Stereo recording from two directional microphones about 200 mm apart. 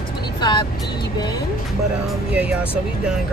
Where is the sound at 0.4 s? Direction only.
25° left (ahead or behind).